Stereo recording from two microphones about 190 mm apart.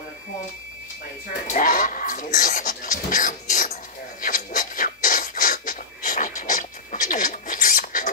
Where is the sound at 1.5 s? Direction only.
45° left (ahead or behind).